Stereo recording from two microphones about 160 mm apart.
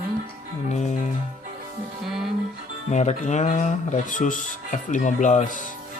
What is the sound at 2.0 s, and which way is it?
Music, centre (ahead or behind).